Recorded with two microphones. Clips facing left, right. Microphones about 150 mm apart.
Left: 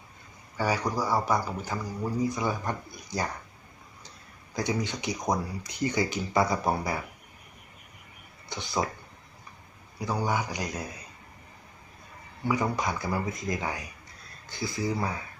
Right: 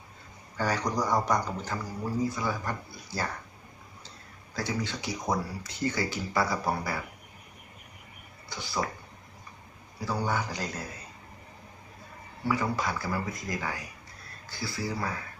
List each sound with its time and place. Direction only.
0.5 s speech: 10° left (ahead or behind)
2.3 s speech: 20° left (ahead or behind)
4.5 s speech: 15° left (ahead or behind)
8.4 s speech: 20° left (ahead or behind)
10.0 s speech: 15° left (ahead or behind)
12.5 s speech: 20° left (ahead or behind)